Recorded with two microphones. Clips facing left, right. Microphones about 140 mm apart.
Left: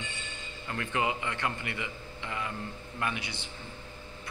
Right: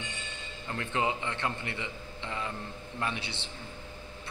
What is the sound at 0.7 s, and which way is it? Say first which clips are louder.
A man's voice: even; 20° right (ahead or behind).